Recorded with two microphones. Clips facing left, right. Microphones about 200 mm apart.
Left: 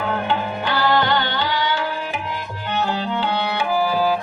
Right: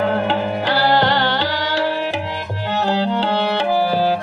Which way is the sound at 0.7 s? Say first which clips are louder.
Right 2 dB; 40° right (ahead or behind).